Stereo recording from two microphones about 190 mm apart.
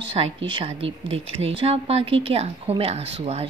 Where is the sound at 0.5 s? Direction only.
25° right (ahead or behind).